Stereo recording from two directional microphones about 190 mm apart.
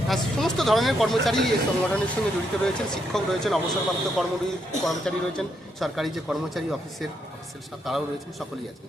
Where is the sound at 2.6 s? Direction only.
Centre (ahead or behind).